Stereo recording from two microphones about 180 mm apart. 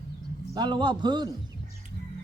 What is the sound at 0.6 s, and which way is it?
Speech, 25° right (ahead or behind).